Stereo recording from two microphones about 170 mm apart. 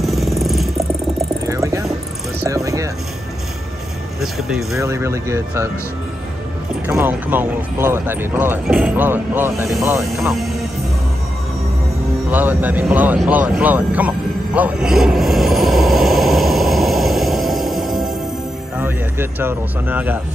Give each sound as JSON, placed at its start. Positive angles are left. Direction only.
{"t": 0.0, "sound": "music", "side_deg": 0}
{"t": 0.7, "sound": "music", "side_deg": -20}
{"t": 4.2, "sound": "music", "side_deg": 0}
{"t": 4.7, "sound": "speech", "side_deg": -15}
{"t": 6.9, "sound": "speech", "side_deg": -15}
{"t": 12.3, "sound": "vehicle", "side_deg": -10}
{"t": 18.8, "sound": "speech", "side_deg": -15}